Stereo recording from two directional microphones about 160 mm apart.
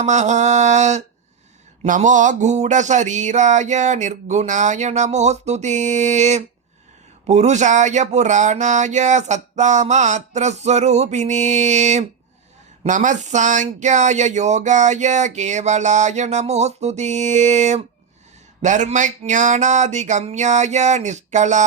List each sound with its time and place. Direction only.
0.0 s speech: 50° right (ahead or behind)